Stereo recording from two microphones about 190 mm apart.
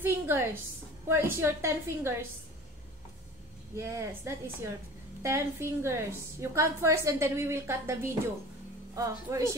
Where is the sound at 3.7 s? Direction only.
15° right (ahead or behind).